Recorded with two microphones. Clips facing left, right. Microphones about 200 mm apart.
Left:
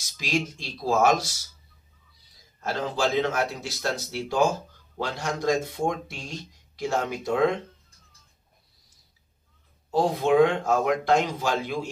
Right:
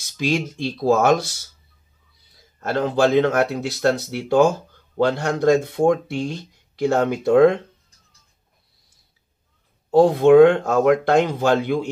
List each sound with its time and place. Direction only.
0.0 s speech: 60° right (ahead or behind)
2.6 s speech: 60° right (ahead or behind)
9.8 s speech: 60° right (ahead or behind)